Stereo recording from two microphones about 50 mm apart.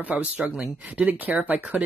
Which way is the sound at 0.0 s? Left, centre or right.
Right.